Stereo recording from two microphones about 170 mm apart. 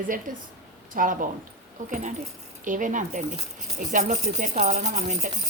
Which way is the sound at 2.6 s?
50° right (ahead or behind).